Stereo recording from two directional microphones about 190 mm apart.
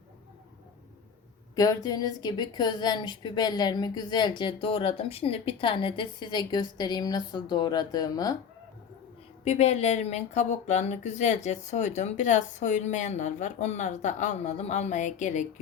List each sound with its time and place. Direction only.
1.5 s a woman's voice: 20° left (ahead or behind)
9.4 s speech: 35° left (ahead or behind)